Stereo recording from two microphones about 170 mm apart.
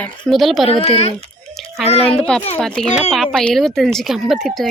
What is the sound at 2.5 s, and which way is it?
Speech, 5° left (ahead or behind).